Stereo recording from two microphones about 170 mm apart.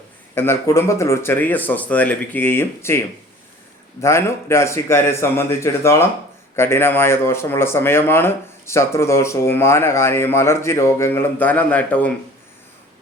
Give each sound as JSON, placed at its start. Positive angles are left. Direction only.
{"t": 0.3, "sound": "speech", "side_deg": 15}
{"t": 4.0, "sound": "speech", "side_deg": 15}